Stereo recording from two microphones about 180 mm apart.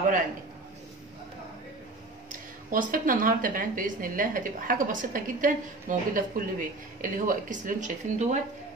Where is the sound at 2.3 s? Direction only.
50° right (ahead or behind).